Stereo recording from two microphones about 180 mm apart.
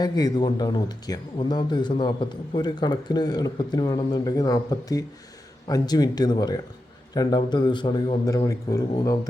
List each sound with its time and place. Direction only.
0.0 s speech: 20° left (ahead or behind)